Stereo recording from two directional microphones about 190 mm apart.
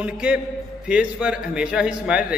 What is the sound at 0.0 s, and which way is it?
A man's voice, 5° right (ahead or behind).